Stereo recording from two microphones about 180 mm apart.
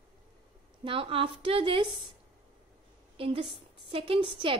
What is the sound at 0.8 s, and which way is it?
A woman's voice, 30° right (ahead or behind).